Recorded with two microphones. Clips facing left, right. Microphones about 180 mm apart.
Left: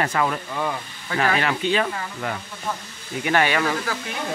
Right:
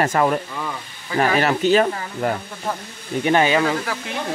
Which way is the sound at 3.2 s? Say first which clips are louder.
Right 4 dB; 20° right (ahead or behind).